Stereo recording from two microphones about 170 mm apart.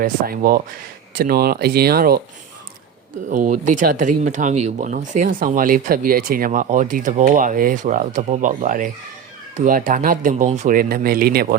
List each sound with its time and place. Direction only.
0.0 s speech: 55° right (ahead or behind)
3.2 s speech: 50° right (ahead or behind)